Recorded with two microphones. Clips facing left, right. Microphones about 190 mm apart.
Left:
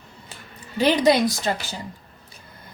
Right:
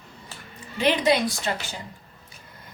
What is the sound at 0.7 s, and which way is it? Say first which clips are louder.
Speech: left 4 dB; 40° left (ahead or behind).